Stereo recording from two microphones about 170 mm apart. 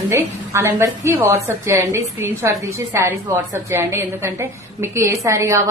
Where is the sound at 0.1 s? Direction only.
15° right (ahead or behind).